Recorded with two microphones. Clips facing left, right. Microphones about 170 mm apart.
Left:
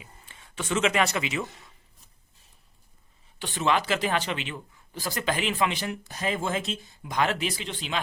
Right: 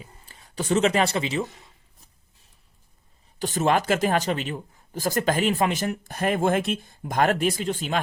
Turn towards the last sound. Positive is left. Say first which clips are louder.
# right 6 dB
turn(degrees=-45)  # may be behind; listen again after turning